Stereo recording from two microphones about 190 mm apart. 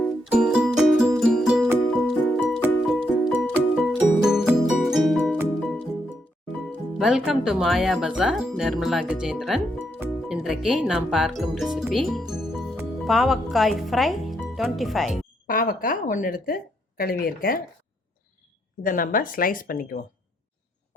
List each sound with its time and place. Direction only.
0.3 s music: 5° right (ahead or behind)
7.0 s speech: 5° right (ahead or behind)
15.4 s speech: 45° left (ahead or behind)
18.8 s speech: 45° left (ahead or behind)